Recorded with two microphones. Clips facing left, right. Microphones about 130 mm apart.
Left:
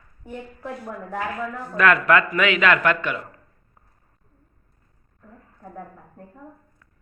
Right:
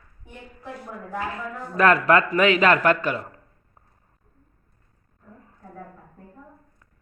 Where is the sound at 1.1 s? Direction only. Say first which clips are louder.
Left 2 dB; 30° right (ahead or behind).